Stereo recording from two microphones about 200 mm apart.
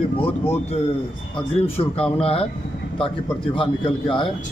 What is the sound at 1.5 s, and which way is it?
Speech, 30° left (ahead or behind).